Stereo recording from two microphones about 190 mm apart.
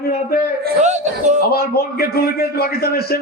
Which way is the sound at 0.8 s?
40° right (ahead or behind).